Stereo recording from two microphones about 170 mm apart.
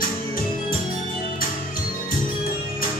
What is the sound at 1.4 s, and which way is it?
Music, 55° left (ahead or behind).